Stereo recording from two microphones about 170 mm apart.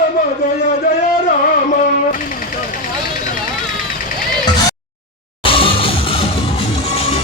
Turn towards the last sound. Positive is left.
turn(degrees=30)  # may be behind; listen again after turning